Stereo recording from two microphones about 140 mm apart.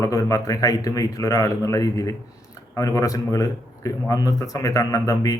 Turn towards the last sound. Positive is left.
turn(degrees=25)  # may be behind; listen again after turning